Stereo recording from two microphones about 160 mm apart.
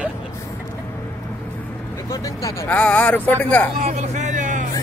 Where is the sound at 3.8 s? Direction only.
45° right (ahead or behind).